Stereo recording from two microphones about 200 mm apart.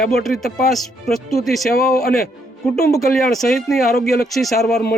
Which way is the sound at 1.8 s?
50° left (ahead or behind).